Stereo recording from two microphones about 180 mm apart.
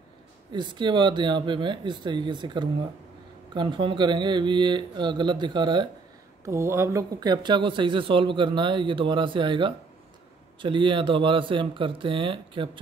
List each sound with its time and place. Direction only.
0.5 s speech: 25° right (ahead or behind)
6.4 s speech: 15° right (ahead or behind)